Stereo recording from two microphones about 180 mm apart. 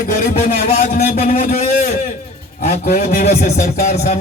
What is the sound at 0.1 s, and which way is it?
Speech, 55° left (ahead or behind).